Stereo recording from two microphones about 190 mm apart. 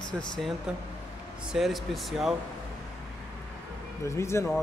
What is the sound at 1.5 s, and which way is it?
Speech, centre (ahead or behind).